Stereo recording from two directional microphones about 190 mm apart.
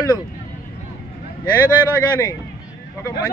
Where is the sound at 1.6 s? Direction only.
20° left (ahead or behind).